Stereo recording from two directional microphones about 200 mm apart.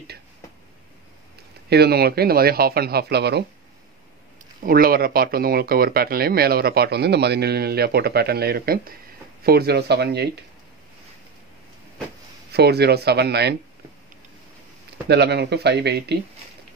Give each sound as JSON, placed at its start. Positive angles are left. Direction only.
{"t": 1.7, "sound": "speech", "side_deg": -55}
{"t": 4.6, "sound": "speech", "side_deg": -45}
{"t": 12.5, "sound": "speech", "side_deg": -55}
{"t": 15.0, "sound": "speech", "side_deg": -55}